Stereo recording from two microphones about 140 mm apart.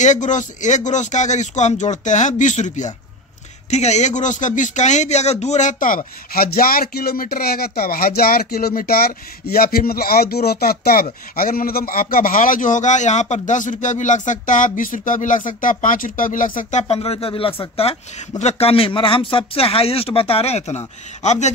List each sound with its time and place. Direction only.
0.0 s a man's voice: 60° left (ahead or behind)
16.8 s speech: 45° left (ahead or behind)